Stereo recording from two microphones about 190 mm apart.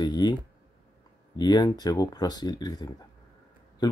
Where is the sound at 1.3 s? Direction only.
20° left (ahead or behind).